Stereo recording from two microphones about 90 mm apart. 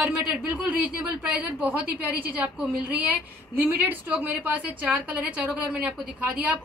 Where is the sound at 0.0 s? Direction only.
15° right (ahead or behind).